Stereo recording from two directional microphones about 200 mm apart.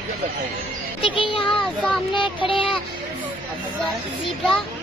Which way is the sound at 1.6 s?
5° left (ahead or behind).